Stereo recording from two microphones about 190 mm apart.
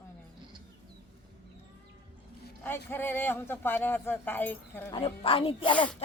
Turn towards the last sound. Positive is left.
turn(degrees=25)  # may be behind; listen again after turning